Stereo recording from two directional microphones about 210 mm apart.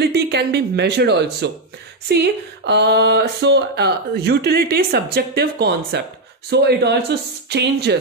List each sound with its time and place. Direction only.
0.1 s speech: 50° right (ahead or behind)